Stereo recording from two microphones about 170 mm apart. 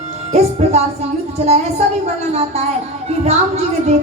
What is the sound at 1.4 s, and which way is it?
A woman's voice, 40° right (ahead or behind).